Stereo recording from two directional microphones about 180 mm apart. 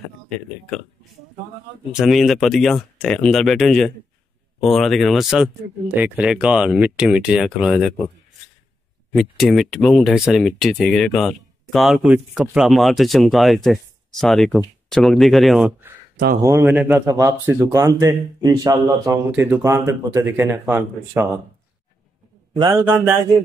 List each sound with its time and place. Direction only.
2.0 s speech: centre (ahead or behind)
9.1 s speech: centre (ahead or behind)
16.4 s a man's voice: 15° right (ahead or behind)
22.7 s a man's voice: 15° right (ahead or behind)